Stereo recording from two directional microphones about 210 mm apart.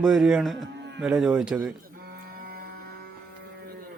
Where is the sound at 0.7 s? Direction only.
55° right (ahead or behind).